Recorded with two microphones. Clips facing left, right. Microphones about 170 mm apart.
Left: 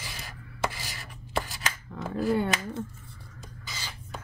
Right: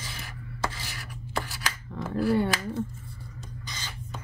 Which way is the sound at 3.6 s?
5° left (ahead or behind).